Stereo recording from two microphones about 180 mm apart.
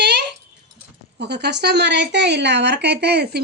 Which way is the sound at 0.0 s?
70° right (ahead or behind).